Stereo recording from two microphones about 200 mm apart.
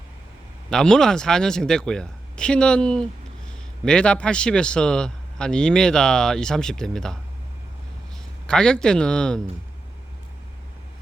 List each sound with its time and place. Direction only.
0.7 s a man's voice: 5° left (ahead or behind)
8.4 s a man's voice: 5° left (ahead or behind)